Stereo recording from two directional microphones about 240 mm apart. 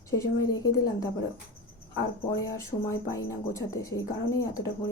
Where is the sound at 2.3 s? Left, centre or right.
Centre.